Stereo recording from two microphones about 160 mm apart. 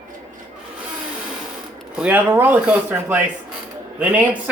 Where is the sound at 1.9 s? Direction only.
10° right (ahead or behind).